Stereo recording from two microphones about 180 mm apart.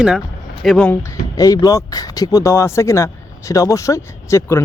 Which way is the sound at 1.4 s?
20° left (ahead or behind).